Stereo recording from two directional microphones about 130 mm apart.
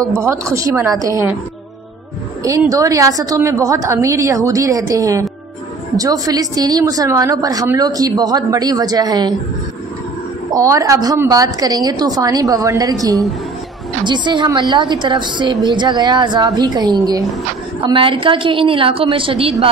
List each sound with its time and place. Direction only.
0.0 s a woman's voice: 20° right (ahead or behind)
2.7 s a woman's voice: 25° right (ahead or behind)
10.6 s a woman's voice: 25° right (ahead or behind); by 19.5 s 45° right (ahead or behind)